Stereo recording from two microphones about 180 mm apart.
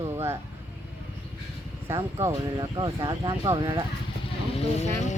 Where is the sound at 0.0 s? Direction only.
15° right (ahead or behind).